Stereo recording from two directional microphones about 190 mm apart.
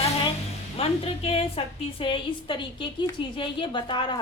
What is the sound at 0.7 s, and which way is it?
A woman's voice, 30° left (ahead or behind).